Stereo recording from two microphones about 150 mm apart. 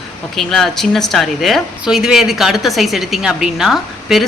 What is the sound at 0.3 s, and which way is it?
Speech, centre (ahead or behind).